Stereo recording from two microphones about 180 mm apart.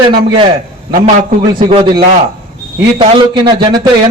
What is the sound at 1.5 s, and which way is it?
Speech, 25° right (ahead or behind).